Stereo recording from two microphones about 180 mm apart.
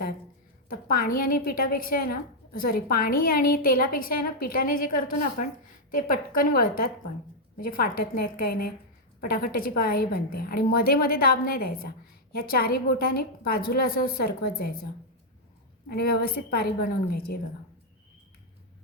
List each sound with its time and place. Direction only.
0.7 s a woman's voice: 50° left (ahead or behind)
15.9 s a woman's voice: 60° left (ahead or behind)